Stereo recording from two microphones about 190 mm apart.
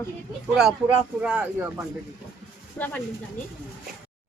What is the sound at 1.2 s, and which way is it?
Speech, 5° right (ahead or behind).